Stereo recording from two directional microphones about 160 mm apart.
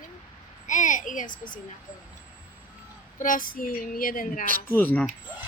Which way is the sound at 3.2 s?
60° left (ahead or behind).